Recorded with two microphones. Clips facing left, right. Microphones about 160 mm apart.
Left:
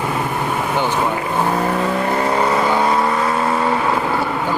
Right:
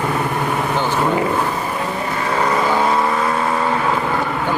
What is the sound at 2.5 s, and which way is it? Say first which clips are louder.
Vehicle: left 1 dB; centre (ahead or behind).